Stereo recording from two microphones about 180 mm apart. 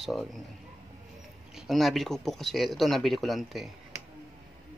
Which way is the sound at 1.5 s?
Centre (ahead or behind).